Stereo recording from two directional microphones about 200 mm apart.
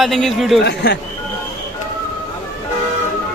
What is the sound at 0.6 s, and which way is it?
Speech, 55° left (ahead or behind).